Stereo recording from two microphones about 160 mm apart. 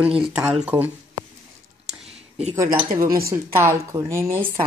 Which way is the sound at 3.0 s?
20° right (ahead or behind).